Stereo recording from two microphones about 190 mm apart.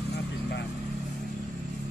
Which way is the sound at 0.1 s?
60° left (ahead or behind).